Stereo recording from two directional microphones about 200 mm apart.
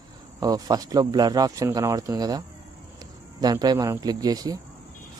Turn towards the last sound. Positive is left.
turn(degrees=-20)  # may be behind; listen again after turning